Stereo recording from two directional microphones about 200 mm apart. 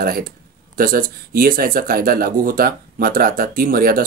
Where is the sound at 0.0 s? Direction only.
45° right (ahead or behind).